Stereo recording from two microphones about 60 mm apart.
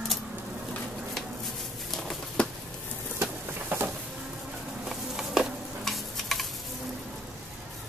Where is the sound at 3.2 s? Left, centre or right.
Right.